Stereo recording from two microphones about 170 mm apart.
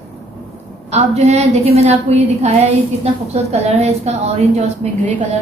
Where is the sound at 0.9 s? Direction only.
40° right (ahead or behind).